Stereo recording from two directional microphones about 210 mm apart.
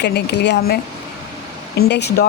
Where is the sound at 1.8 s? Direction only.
55° left (ahead or behind).